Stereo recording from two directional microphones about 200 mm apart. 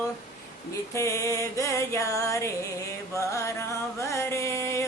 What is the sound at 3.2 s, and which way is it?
Music, 15° left (ahead or behind).